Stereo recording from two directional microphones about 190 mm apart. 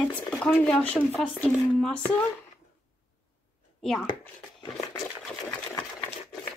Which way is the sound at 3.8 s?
Centre (ahead or behind).